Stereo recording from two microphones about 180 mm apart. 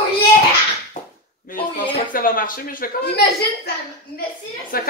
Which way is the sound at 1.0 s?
50° left (ahead or behind).